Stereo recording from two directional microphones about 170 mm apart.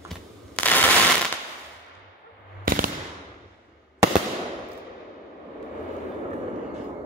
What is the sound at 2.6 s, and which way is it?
Gunshot, 55° right (ahead or behind).